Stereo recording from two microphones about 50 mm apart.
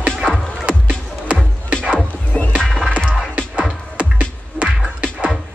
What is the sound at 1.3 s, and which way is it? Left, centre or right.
Music, right.